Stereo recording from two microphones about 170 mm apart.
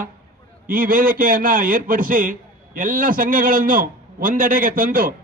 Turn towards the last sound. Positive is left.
turn(degrees=-55)  # may be behind; listen again after turning